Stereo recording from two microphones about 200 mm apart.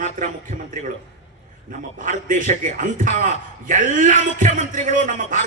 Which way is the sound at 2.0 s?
40° right (ahead or behind).